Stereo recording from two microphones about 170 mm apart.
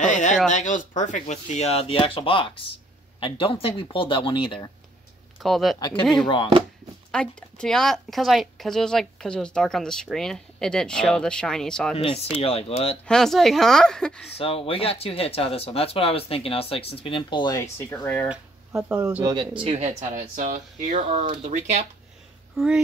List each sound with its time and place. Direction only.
0.0 s a sound: 45° left (ahead or behind)
0.5 s speech: 45° left (ahead or behind); by 4.6 s 30° left (ahead or behind)
5.4 s speech: centre (ahead or behind)
5.8 s speech: 25° left (ahead or behind)
7.1 s speech: 5° left (ahead or behind)
12.0 s speech: 35° left (ahead or behind)
13.0 s speech: 5° left (ahead or behind)
14.4 s speech: 35° left (ahead or behind); by 18.3 s 10° left (ahead or behind)
19.6 s speech: 35° right (ahead or behind)